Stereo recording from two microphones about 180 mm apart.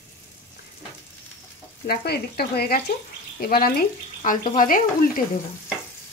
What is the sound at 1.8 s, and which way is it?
Frying, 60° left (ahead or behind).